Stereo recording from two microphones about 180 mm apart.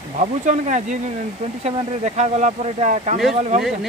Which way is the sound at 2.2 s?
40° right (ahead or behind).